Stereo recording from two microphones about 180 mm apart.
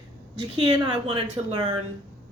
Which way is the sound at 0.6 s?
30° right (ahead or behind).